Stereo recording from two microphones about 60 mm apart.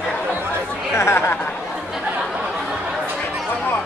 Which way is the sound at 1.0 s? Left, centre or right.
Left.